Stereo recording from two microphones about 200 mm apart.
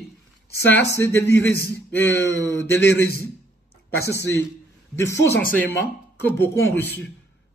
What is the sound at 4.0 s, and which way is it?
Speech, 60° left (ahead or behind).